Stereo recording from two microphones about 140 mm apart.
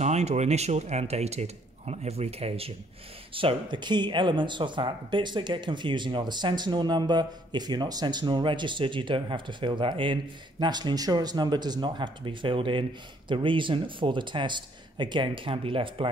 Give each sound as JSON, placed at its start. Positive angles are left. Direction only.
{"t": 0.0, "sound": "speech", "side_deg": -50}